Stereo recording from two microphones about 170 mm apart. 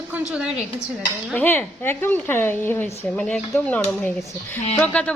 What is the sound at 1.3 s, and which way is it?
A woman's voice, 10° left (ahead or behind).